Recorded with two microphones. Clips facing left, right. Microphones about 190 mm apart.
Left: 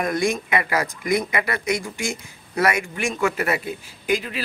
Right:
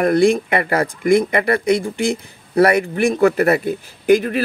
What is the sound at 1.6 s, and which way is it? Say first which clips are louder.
Speech: right 8 dB; 30° right (ahead or behind).